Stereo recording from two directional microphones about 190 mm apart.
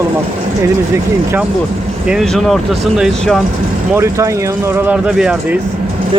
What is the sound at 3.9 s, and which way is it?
Speech, 15° right (ahead or behind).